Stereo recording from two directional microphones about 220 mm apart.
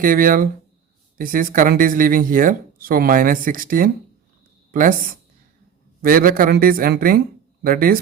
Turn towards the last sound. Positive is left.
turn(degrees=-40)  # may be behind; listen again after turning